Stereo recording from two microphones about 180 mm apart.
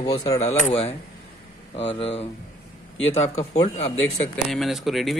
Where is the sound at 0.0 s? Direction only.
20° left (ahead or behind).